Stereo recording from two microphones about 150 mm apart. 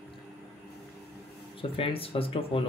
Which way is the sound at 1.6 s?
35° left (ahead or behind).